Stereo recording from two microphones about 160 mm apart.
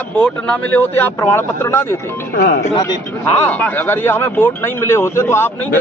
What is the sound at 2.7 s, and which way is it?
Speech, 25° left (ahead or behind).